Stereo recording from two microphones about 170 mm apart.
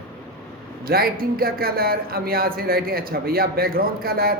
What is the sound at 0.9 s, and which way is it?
Speech, 60° right (ahead or behind).